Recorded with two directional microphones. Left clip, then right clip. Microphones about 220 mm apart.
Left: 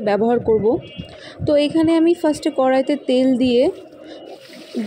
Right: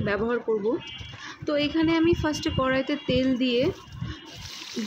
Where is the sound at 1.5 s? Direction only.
15° left (ahead or behind).